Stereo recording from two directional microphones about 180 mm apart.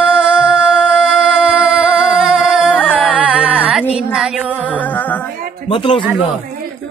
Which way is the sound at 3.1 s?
5° right (ahead or behind).